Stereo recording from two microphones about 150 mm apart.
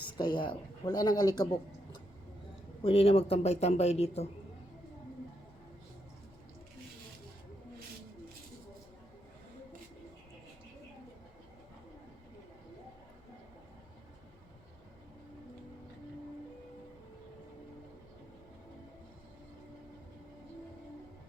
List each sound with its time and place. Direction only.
0.2 s speech: 30° left (ahead or behind)
2.8 s speech: 40° left (ahead or behind)